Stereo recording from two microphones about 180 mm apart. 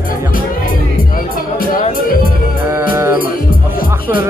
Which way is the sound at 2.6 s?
15° right (ahead or behind).